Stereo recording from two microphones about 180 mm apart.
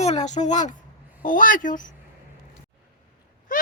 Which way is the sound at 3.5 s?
50° left (ahead or behind).